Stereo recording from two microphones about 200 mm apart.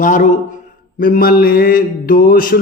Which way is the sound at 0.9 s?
40° left (ahead or behind).